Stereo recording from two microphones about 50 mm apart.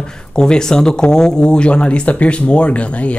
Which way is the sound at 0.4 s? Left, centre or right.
Centre.